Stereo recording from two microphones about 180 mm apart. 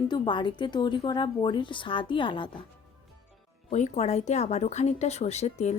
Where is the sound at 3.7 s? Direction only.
40° left (ahead or behind).